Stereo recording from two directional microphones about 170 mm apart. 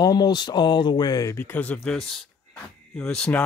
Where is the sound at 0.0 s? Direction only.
25° left (ahead or behind).